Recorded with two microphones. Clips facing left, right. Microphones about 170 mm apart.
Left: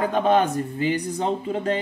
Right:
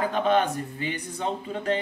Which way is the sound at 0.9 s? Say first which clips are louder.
Left 5 dB; 35° left (ahead or behind).